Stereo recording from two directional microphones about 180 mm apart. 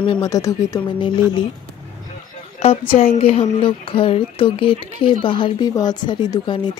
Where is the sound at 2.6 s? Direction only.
30° left (ahead or behind).